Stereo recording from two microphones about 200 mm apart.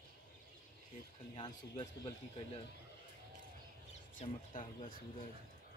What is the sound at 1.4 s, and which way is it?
Speech, 20° left (ahead or behind).